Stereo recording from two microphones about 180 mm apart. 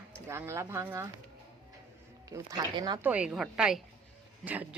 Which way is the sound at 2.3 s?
20° right (ahead or behind).